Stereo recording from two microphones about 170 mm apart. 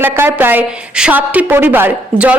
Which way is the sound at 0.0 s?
15° right (ahead or behind).